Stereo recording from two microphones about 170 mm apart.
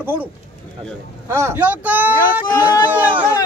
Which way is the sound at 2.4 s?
25° left (ahead or behind).